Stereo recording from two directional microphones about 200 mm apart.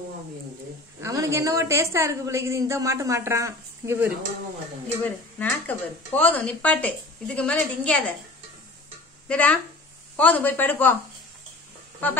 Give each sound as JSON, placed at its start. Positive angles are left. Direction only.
{"t": 1.0, "sound": "a woman's voice", "side_deg": -15}
{"t": 5.0, "sound": "speech", "side_deg": 10}
{"t": 9.3, "sound": "speech", "side_deg": 5}
{"t": 12.0, "sound": "speech", "side_deg": 10}